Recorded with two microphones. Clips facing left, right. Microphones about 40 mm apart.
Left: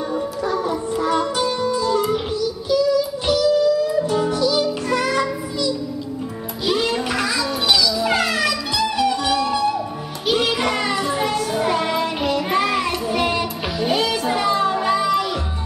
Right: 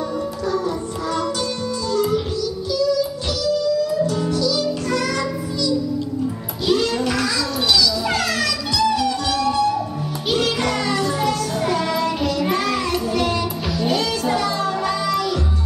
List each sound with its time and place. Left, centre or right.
0.5 s music: left
6.6 s a sound: centre
10.2 s music: centre